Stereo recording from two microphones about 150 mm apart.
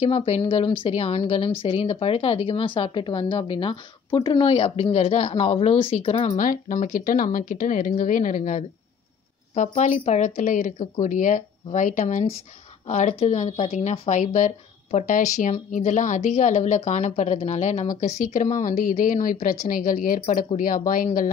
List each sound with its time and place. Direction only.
0.0 s speech: 35° left (ahead or behind)
6.3 s speech: 60° left (ahead or behind)
18.2 s speech: 60° left (ahead or behind)